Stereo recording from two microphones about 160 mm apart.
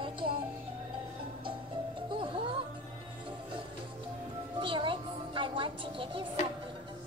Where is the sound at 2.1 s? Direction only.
30° right (ahead or behind).